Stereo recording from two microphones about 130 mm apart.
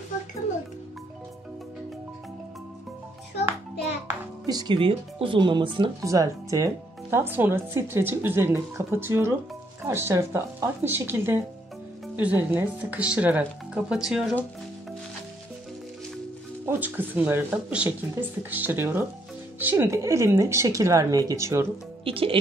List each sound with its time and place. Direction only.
4.5 s speech: 30° right (ahead or behind)
4.7 s speech: 40° right (ahead or behind)
5.9 s speech: 25° right (ahead or behind); by 14.3 s 5° right (ahead or behind)
16.6 s speech: 15° right (ahead or behind)
22.0 s speech: 45° right (ahead or behind)